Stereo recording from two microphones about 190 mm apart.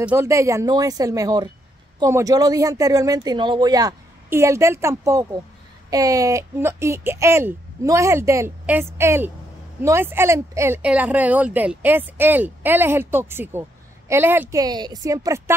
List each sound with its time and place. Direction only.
0.0 s speech: 15° right (ahead or behind)